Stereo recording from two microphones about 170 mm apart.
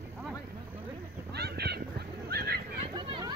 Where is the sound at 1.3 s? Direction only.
70° right (ahead or behind).